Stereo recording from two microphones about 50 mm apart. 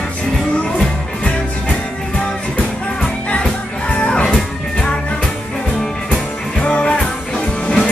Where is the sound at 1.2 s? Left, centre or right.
Left.